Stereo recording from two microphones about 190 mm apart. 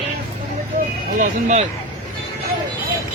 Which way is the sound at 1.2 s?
40° right (ahead or behind).